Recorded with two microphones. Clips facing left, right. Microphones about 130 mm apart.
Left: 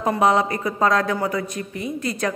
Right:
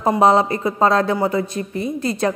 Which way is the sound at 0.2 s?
30° right (ahead or behind).